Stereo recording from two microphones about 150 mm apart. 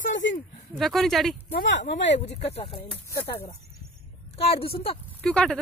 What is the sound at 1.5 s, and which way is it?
Speech, 55° left (ahead or behind).